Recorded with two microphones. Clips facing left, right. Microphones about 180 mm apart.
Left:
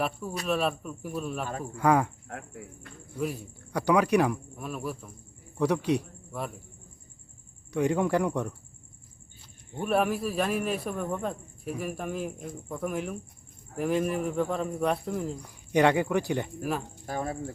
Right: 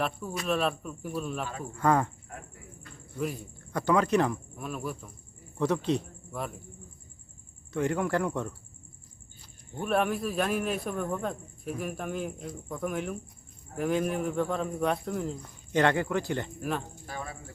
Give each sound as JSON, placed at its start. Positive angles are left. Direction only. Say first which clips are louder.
{"t": 0.4, "sound": "a man's voice", "louder": "left 1 dB", "side_deg": 0}
{"t": 2.3, "sound": "speech", "louder": "left 4 dB", "side_deg": 80}
{"t": 3.2, "sound": "a man's voice", "louder": "left 1 dB", "side_deg": 0}
{"t": 5.5, "sound": "a man's voice", "louder": "left 2 dB", "side_deg": 15}
{"t": 6.3, "sound": "a man's voice", "louder": "left 1 dB", "side_deg": 0}
{"t": 7.7, "sound": "a man's voice", "louder": "left 3 dB", "side_deg": 15}
{"t": 9.8, "sound": "a man's voice", "louder": "left 1 dB", "side_deg": 5}
{"t": 15.4, "sound": "a man's voice", "louder": "left 4 dB", "side_deg": 15}
{"t": 16.6, "sound": "a man's voice", "louder": "left 1 dB", "side_deg": 5}
{"t": 17.1, "sound": "speech", "louder": "left 8 dB", "side_deg": 45}